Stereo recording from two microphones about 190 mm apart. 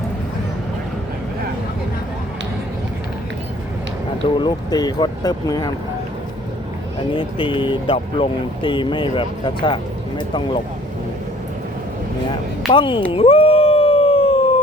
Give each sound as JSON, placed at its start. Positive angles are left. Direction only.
{"t": 4.4, "sound": "speech", "side_deg": 20}
{"t": 7.1, "sound": "speech", "side_deg": 25}
{"t": 12.7, "sound": "speech", "side_deg": 25}
{"t": 13.1, "sound": "dog", "side_deg": 30}